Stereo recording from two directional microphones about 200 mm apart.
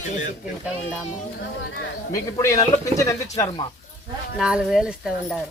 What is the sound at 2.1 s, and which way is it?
A man's voice, 15° left (ahead or behind).